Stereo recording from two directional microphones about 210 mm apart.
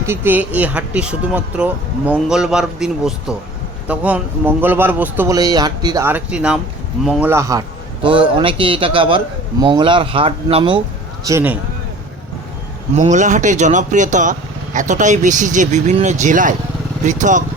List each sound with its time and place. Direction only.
0.0 s a man's voice: 10° right (ahead or behind)
11.3 s a man's voice: 10° right (ahead or behind)
12.9 s speech: 35° right (ahead or behind)